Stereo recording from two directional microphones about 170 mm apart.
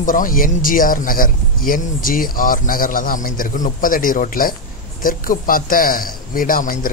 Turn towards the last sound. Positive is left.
turn(degrees=55)  # may be behind; listen again after turning